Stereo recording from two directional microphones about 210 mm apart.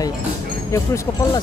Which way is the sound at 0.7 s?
15° left (ahead or behind).